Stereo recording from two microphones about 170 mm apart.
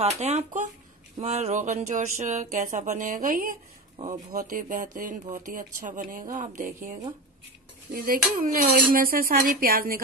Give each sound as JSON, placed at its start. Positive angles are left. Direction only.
{"t": 0.0, "sound": "speech", "side_deg": -40}
{"t": 3.9, "sound": "a sound", "side_deg": -40}
{"t": 4.3, "sound": "speech", "side_deg": -55}